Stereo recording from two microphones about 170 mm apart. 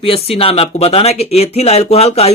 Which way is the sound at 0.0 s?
35° left (ahead or behind).